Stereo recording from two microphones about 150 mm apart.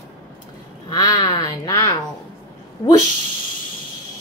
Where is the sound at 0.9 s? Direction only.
25° left (ahead or behind).